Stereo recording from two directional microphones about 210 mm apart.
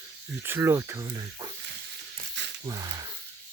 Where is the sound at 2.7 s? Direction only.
15° right (ahead or behind).